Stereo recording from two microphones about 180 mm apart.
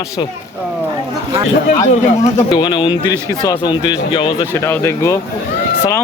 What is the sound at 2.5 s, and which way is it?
A man's voice, 25° left (ahead or behind).